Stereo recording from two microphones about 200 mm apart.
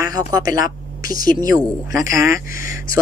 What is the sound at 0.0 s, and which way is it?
Speech, 20° right (ahead or behind).